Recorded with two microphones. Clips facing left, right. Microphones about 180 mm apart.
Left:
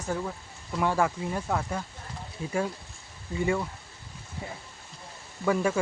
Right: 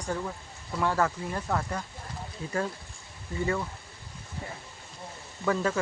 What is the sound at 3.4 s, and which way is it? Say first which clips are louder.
Speech: left 2 dB; 15° left (ahead or behind).